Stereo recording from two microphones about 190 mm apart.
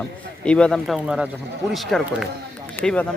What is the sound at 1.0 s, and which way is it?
A man's voice, 5° right (ahead or behind).